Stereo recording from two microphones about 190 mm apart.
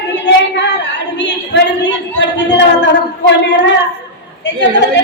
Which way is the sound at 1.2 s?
65° left (ahead or behind).